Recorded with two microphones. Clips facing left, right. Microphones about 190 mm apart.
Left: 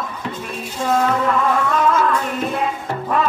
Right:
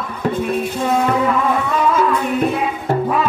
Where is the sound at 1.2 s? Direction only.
Centre (ahead or behind).